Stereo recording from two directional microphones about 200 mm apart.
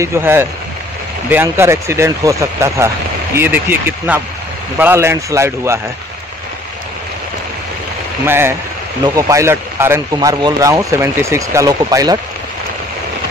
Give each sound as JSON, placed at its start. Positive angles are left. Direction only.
{"t": 0.0, "sound": "speech", "side_deg": -10}
{"t": 8.3, "sound": "speech", "side_deg": -10}